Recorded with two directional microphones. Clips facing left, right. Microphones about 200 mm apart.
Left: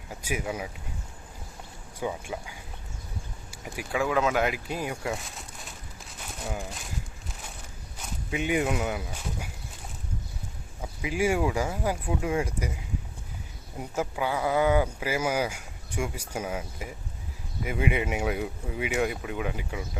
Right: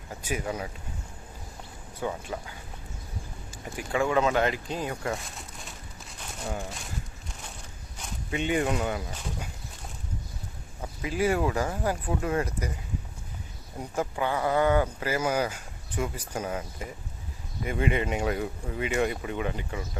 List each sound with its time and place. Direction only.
0.1 s speech: 10° left (ahead or behind)
2.0 s speech: 10° left (ahead or behind)
5.1 s crumpling: centre (ahead or behind)
7.9 s speech: 5° left (ahead or behind)
10.8 s speech: 10° left (ahead or behind)
13.7 s speech: 10° left (ahead or behind)